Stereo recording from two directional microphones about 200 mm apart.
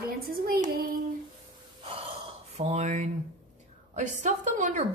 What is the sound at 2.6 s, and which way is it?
A woman's voice, 35° right (ahead or behind).